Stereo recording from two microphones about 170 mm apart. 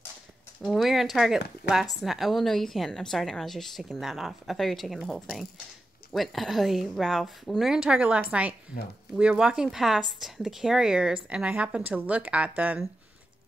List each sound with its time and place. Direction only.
0.6 s a woman's voice: centre (ahead or behind)